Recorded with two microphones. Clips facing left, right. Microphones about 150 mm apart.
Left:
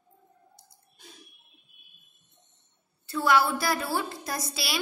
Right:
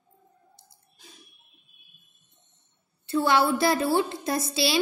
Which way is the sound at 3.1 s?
25° right (ahead or behind).